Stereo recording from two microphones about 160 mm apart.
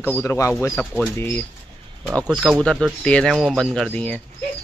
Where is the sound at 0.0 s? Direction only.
15° left (ahead or behind).